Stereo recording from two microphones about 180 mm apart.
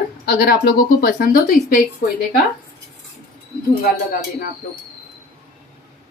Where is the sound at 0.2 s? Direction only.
60° left (ahead or behind).